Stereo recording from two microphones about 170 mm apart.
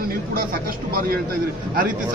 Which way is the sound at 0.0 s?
60° right (ahead or behind).